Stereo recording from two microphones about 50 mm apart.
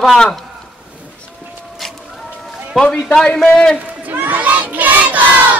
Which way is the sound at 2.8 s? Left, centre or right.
Centre.